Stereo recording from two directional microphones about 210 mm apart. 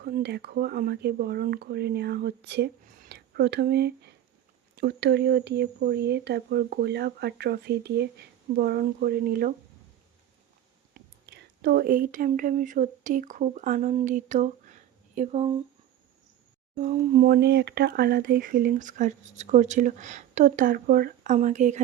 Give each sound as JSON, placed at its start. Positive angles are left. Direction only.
{"t": 0.0, "sound": "speech", "side_deg": -50}
{"t": 10.9, "sound": "speech", "side_deg": -45}
{"t": 16.7, "sound": "speech", "side_deg": -40}